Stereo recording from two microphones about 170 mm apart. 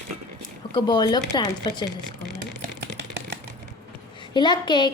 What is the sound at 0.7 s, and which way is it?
A woman's voice, 25° left (ahead or behind).